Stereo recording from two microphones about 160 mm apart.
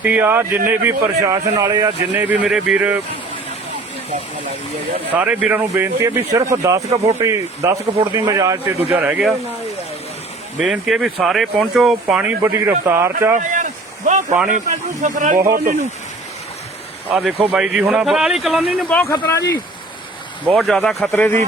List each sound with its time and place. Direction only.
0.0 s speech: 10° right (ahead or behind)
2.1 s speech: 10° right (ahead or behind)
5.1 s speech: 10° right (ahead or behind)
10.6 s a man's voice: centre (ahead or behind)
13.4 s a sound: 50° right (ahead or behind)
14.1 s speech: 50° right (ahead or behind)
17.1 s a man's voice: 5° right (ahead or behind)
18.9 s speech: 15° left (ahead or behind)
20.5 s a man's voice: centre (ahead or behind)